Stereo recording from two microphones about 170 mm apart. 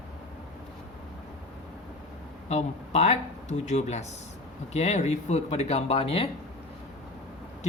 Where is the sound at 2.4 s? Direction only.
40° left (ahead or behind).